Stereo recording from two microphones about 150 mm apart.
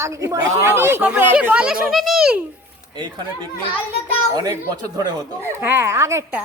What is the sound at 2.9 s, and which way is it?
Speech, 30° right (ahead or behind).